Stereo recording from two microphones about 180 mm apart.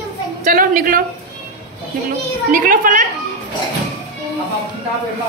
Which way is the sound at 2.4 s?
45° right (ahead or behind).